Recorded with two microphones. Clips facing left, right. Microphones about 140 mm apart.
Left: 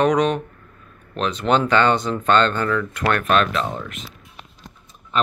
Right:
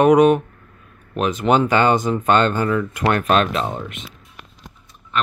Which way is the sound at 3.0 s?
30° right (ahead or behind).